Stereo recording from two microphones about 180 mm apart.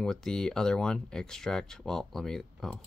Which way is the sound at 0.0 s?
5° left (ahead or behind).